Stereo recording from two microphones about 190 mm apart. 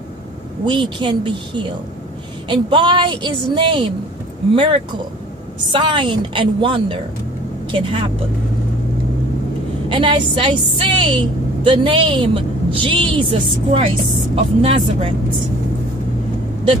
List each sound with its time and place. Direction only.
0.7 s a woman's voice: 25° right (ahead or behind)
9.8 s a woman's voice: 25° right (ahead or behind)